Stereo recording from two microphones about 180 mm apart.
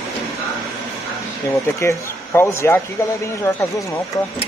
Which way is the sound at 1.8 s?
15° left (ahead or behind).